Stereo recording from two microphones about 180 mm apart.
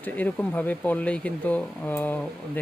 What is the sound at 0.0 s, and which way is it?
Speech, 10° left (ahead or behind).